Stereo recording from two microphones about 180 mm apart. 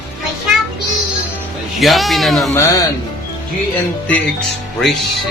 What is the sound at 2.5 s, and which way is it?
Speech, 15° left (ahead or behind).